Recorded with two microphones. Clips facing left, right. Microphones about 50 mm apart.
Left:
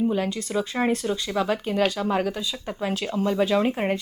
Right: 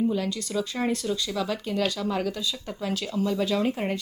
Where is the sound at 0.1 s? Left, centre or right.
Left.